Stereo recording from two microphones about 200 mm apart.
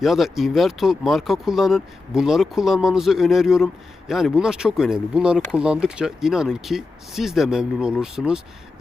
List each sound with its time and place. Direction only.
0.0 s speech: centre (ahead or behind)